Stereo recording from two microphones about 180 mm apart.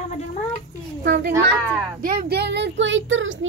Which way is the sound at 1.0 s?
70° right (ahead or behind).